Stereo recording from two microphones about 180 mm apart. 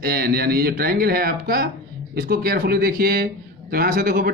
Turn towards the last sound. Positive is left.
turn(degrees=-50)  # may be behind; listen again after turning